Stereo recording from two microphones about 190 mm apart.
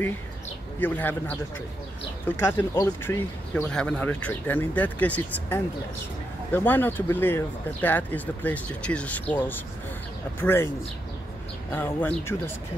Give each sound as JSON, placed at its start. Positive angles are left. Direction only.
{"t": 0.7, "sound": "speech", "side_deg": 10}
{"t": 2.4, "sound": "speech", "side_deg": 10}
{"t": 11.7, "sound": "speech", "side_deg": 10}